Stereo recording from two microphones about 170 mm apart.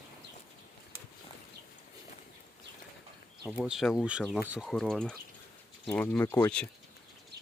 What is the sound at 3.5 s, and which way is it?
Speech, 5° right (ahead or behind).